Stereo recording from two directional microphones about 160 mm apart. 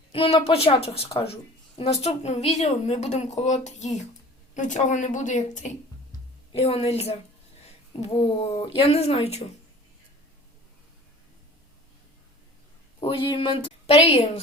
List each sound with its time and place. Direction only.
0.1 s a woman's voice: 35° left (ahead or behind); by 5.6 s 50° left (ahead or behind)
6.5 s a woman's voice: 40° left (ahead or behind)
13.0 s a woman's voice: 35° left (ahead or behind)